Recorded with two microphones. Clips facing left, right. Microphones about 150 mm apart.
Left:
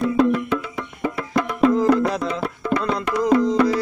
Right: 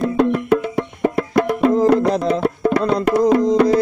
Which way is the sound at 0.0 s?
55° right (ahead or behind).